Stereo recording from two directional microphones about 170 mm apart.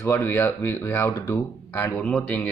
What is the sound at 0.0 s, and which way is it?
Speech, 15° left (ahead or behind).